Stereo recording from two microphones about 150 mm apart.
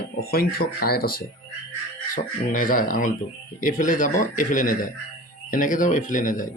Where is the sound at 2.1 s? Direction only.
65° left (ahead or behind).